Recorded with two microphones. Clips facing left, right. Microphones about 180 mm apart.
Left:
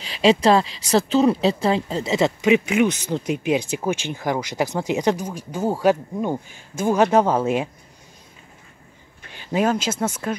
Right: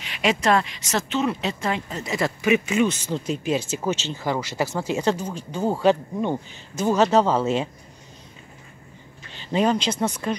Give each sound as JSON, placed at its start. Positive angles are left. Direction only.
{"t": 0.0, "sound": "speech", "side_deg": 30}
{"t": 9.3, "sound": "speech", "side_deg": 10}